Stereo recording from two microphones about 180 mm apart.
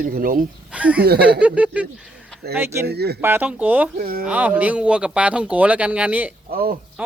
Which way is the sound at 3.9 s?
50° right (ahead or behind).